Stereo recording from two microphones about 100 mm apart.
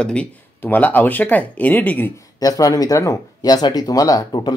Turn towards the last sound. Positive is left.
turn(degrees=40)  # may be behind; listen again after turning